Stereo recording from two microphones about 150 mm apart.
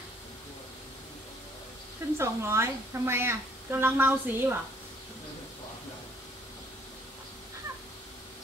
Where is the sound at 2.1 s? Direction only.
15° right (ahead or behind).